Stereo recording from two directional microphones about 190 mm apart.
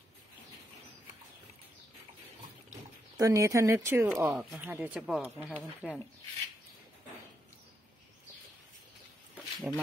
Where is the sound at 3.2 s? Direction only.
15° right (ahead or behind).